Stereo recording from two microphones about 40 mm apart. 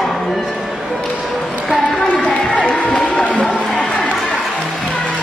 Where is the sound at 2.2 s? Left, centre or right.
Left.